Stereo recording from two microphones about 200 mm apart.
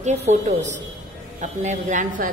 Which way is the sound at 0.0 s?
35° right (ahead or behind).